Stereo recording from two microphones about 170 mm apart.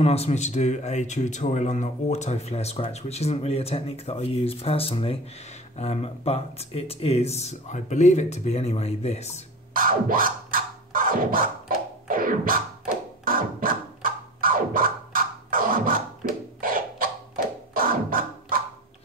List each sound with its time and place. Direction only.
0.0 s a man's voice: 35° left (ahead or behind)
9.8 s scratching: 55° right (ahead or behind)
12.1 s music: 55° right (ahead or behind)
16.2 s a sound: 55° right (ahead or behind)
16.6 s beatboxing: 55° right (ahead or behind)
17.7 s music: 55° right (ahead or behind)